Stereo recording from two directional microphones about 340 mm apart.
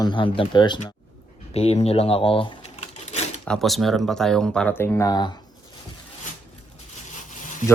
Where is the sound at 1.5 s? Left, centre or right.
Centre.